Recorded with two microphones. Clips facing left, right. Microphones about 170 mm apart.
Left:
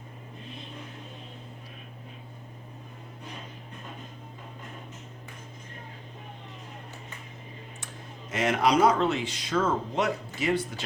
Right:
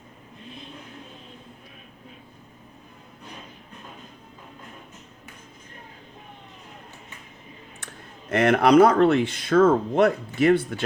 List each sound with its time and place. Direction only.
8.3 s speech: 60° right (ahead or behind)